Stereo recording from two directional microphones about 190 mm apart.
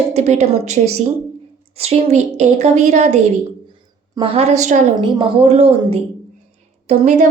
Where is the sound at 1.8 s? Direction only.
35° right (ahead or behind).